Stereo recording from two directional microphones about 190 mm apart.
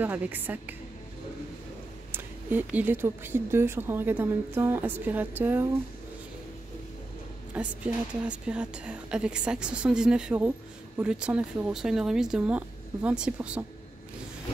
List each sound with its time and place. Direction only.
0.0 s speech: 10° right (ahead or behind)
2.1 s speech: 10° right (ahead or behind)
7.5 s a woman's voice: 5° right (ahead or behind)